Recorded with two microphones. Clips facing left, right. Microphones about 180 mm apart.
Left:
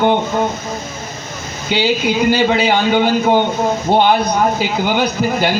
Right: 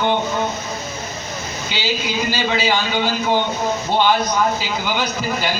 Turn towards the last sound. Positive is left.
turn(degrees=50)  # may be behind; listen again after turning